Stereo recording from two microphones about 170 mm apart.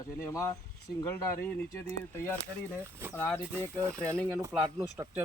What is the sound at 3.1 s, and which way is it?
Speech, 5° left (ahead or behind).